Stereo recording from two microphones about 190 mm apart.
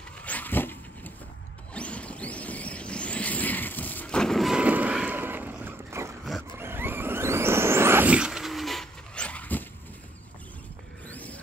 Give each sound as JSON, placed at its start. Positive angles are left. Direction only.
{"t": 0.2, "sound": "a sound", "side_deg": 10}
{"t": 1.7, "sound": "vehicle", "side_deg": 5}
{"t": 11.1, "sound": "vehicle", "side_deg": 10}